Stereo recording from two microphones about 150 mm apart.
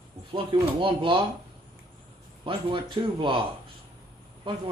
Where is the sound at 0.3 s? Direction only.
35° right (ahead or behind).